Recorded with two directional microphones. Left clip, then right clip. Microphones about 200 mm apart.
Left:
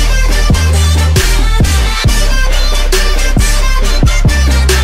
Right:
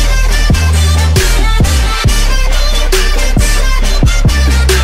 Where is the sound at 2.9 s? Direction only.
Centre (ahead or behind).